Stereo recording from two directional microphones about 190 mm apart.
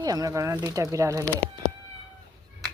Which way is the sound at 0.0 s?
20° right (ahead or behind).